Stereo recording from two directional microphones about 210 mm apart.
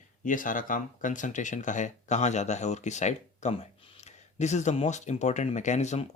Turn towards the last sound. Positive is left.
turn(degrees=30)  # may be behind; listen again after turning